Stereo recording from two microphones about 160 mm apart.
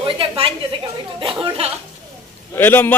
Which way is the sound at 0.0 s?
35° right (ahead or behind).